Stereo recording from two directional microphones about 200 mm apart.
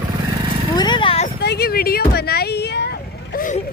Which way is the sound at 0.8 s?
25° left (ahead or behind).